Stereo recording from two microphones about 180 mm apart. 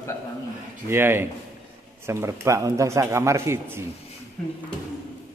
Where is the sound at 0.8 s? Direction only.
15° right (ahead or behind).